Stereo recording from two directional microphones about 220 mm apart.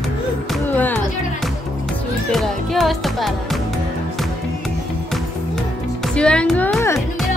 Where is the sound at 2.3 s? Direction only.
Centre (ahead or behind).